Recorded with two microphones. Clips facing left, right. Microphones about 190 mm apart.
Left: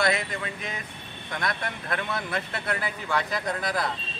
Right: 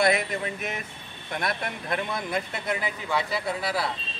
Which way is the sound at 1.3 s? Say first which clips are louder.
Right 1 dB; 25° right (ahead or behind).